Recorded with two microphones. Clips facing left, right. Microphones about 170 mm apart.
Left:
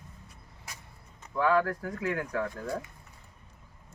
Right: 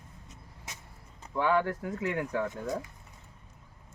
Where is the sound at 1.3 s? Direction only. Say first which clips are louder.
Left 1 dB; 25° right (ahead or behind).